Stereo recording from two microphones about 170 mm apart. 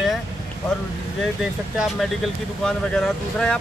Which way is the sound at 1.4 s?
Centre (ahead or behind).